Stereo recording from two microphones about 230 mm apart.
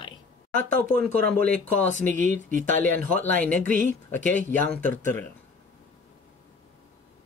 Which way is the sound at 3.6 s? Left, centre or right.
Right.